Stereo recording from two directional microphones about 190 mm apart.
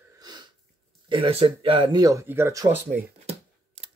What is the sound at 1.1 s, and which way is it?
Speech, 30° right (ahead or behind).